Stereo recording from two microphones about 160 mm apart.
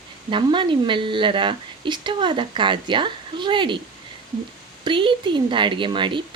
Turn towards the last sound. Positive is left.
turn(degrees=-30)  # may be behind; listen again after turning